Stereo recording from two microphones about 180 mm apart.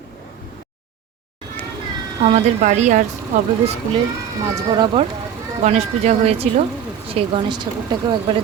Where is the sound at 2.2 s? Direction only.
40° right (ahead or behind).